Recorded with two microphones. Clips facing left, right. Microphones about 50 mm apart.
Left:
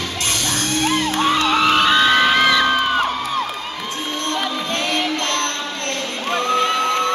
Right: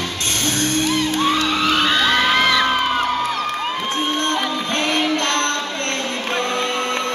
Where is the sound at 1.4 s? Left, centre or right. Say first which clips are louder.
Left 3 dB; centre.